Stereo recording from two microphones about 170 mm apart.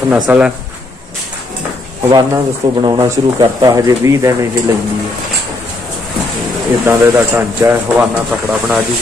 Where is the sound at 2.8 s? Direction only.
25° right (ahead or behind).